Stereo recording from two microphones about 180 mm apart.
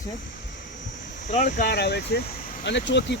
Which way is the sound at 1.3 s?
40° left (ahead or behind).